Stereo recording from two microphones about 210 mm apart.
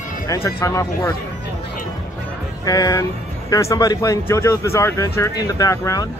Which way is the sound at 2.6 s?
15° left (ahead or behind).